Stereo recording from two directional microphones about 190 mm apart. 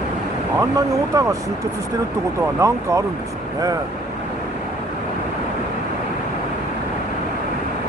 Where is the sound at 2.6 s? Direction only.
15° right (ahead or behind).